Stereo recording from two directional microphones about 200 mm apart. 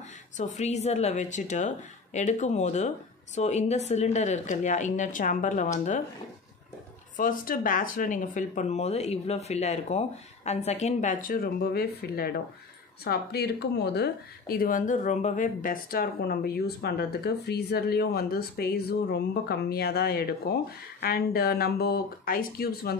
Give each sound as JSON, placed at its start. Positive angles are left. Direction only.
{"t": 0.4, "sound": "speech", "side_deg": 35}
{"t": 7.2, "sound": "speech", "side_deg": 45}